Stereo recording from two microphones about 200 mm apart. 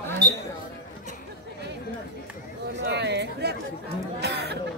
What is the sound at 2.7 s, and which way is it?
Chatter, 55° right (ahead or behind).